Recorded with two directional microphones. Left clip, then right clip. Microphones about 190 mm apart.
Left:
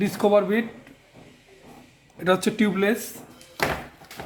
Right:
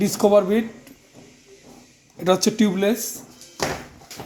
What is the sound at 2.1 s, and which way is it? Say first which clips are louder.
Speech: right 3 dB; 45° right (ahead or behind).